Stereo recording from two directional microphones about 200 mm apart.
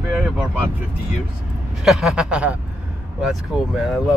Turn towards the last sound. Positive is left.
turn(degrees=0)  # may be behind; listen again after turning